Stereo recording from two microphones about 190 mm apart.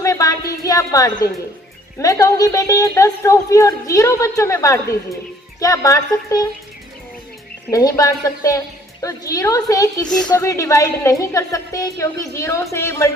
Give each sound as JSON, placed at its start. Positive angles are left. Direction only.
{"t": 0.0, "sound": "music", "side_deg": 15}
{"t": 2.0, "sound": "a woman's voice", "side_deg": 15}
{"t": 7.7, "sound": "a woman's voice", "side_deg": 20}
{"t": 10.1, "sound": "speech", "side_deg": 5}
{"t": 10.3, "sound": "a woman's voice", "side_deg": 15}